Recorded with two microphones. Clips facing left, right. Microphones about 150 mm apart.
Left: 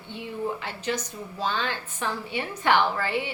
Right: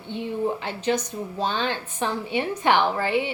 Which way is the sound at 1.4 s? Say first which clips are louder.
Right 2 dB; 20° right (ahead or behind).